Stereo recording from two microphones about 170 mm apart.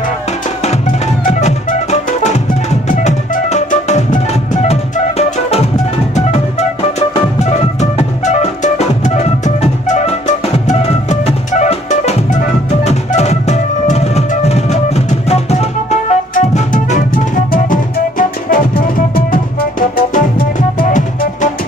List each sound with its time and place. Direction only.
1.2 s music: 45° left (ahead or behind)